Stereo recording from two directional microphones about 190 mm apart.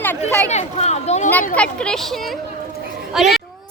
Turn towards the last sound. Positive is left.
turn(degrees=0)  # may be behind; listen again after turning